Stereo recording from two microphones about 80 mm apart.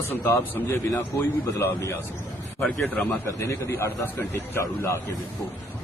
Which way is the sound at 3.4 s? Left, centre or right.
Left.